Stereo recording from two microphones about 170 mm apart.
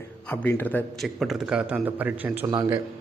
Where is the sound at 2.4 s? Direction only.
25° right (ahead or behind).